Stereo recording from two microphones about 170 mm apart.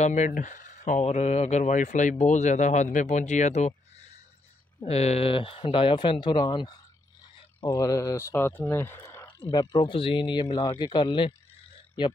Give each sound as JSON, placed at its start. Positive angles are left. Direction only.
{"t": 0.0, "sound": "speech", "side_deg": 45}
{"t": 4.7, "sound": "speech", "side_deg": 35}